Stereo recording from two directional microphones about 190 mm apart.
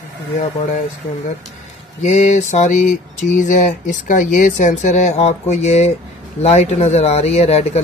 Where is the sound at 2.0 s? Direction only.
35° left (ahead or behind).